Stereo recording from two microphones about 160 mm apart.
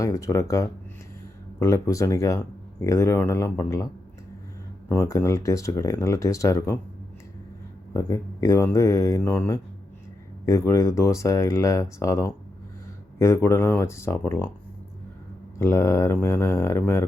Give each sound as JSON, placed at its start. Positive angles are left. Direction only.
{"t": 0.0, "sound": "speech", "side_deg": 20}
{"t": 4.9, "sound": "speech", "side_deg": 20}
{"t": 7.9, "sound": "speech", "side_deg": 20}
{"t": 15.5, "sound": "speech", "side_deg": 15}